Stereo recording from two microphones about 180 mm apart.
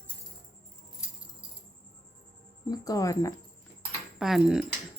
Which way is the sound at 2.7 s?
20° left (ahead or behind).